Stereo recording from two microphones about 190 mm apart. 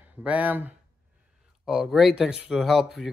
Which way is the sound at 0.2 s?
5° right (ahead or behind).